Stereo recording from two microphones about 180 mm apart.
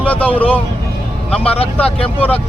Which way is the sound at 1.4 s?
35° left (ahead or behind).